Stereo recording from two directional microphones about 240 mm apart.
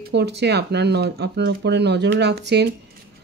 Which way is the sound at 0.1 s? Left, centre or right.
Right.